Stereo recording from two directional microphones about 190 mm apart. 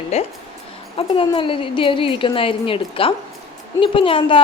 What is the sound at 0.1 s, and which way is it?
A woman's voice, 35° left (ahead or behind).